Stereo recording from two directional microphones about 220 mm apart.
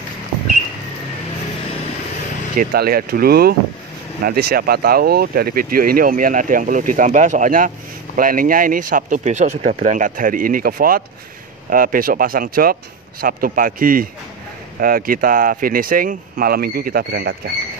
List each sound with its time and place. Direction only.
2.5 s speech: 45° right (ahead or behind)